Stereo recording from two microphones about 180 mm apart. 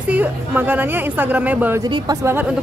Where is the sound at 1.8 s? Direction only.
25° right (ahead or behind).